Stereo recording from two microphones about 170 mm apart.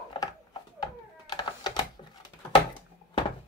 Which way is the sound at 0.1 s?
25° left (ahead or behind).